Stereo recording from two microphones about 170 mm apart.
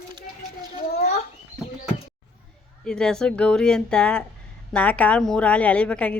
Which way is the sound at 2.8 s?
5° left (ahead or behind).